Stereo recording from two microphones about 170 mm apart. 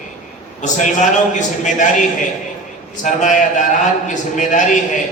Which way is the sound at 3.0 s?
45° left (ahead or behind).